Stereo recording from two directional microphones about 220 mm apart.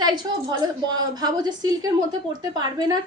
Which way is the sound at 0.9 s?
20° right (ahead or behind).